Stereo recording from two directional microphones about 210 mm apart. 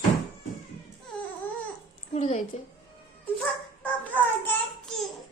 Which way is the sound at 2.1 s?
30° left (ahead or behind).